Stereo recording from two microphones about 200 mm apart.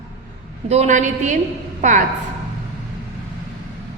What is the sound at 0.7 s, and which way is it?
Speech, 35° right (ahead or behind).